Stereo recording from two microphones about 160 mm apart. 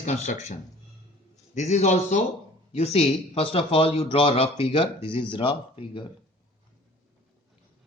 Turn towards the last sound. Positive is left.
turn(degrees=30)  # may be behind; listen again after turning